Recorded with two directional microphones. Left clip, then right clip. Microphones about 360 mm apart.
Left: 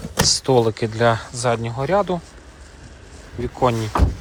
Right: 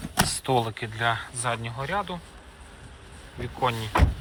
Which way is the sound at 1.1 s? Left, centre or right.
Centre.